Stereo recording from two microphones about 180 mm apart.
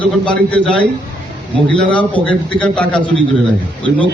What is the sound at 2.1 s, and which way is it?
Speech, 5° left (ahead or behind).